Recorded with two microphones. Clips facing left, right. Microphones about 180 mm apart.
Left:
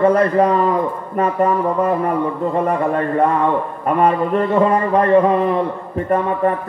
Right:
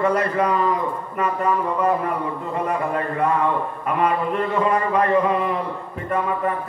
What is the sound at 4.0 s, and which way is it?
Speech, 40° left (ahead or behind).